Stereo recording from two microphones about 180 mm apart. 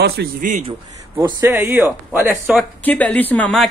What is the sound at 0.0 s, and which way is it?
Speech, 65° right (ahead or behind).